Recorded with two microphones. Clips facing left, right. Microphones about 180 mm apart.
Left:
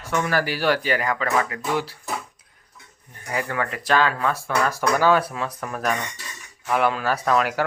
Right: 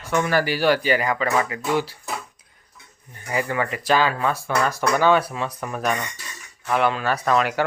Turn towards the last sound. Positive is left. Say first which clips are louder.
# even
turn(degrees=5)  # may be behind; listen again after turning